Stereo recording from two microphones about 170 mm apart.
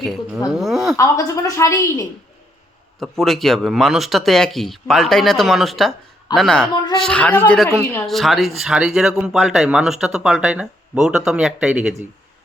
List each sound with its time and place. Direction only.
0.0 s speech: centre (ahead or behind)
0.9 s a woman's voice: 20° left (ahead or behind)
3.0 s speech: centre (ahead or behind)